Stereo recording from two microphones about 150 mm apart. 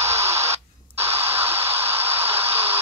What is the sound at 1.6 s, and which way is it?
White noise, 40° right (ahead or behind).